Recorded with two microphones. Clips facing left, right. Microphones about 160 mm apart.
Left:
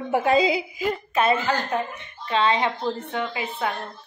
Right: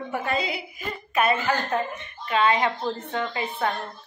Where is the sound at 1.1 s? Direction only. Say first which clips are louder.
Even; 25° left (ahead or behind).